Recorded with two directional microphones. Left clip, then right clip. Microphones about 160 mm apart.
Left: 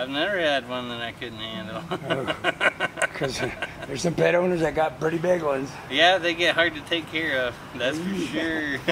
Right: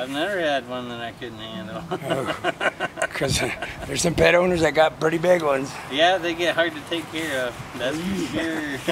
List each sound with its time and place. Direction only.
0.0 s speech: centre (ahead or behind)
2.2 s a sound: centre (ahead or behind)
3.2 s speech: 30° right (ahead or behind)
5.9 s speech: centre (ahead or behind)